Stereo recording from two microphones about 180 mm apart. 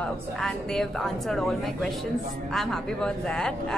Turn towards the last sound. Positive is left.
turn(degrees=5)  # may be behind; listen again after turning